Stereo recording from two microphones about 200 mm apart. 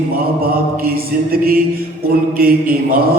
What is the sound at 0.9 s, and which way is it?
Speech, 50° right (ahead or behind).